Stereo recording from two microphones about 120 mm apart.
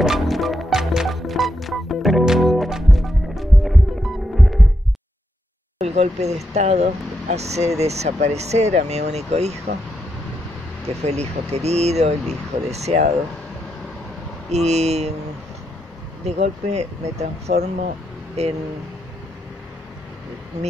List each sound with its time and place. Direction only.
0.0 s music: centre (ahead or behind)
5.8 s speech: 65° right (ahead or behind)
11.1 s speech: 65° right (ahead or behind)
14.5 s speech: 65° right (ahead or behind)
16.3 s speech: 65° right (ahead or behind)